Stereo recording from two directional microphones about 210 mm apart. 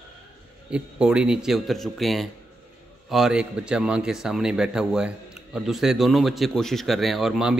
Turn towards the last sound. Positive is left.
turn(degrees=0)  # may be behind; listen again after turning